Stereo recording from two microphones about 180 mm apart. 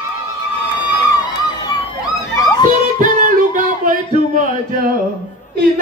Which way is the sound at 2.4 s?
25° left (ahead or behind).